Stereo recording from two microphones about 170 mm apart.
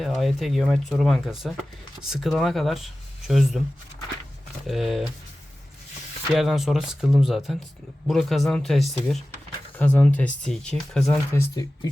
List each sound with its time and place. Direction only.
0.0 s speech: centre (ahead or behind)
4.6 s speech: centre (ahead or behind)
6.3 s speech: centre (ahead or behind)
11.3 s speech: 20° left (ahead or behind)